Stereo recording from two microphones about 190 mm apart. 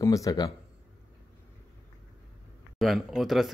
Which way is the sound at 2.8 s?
Centre (ahead or behind).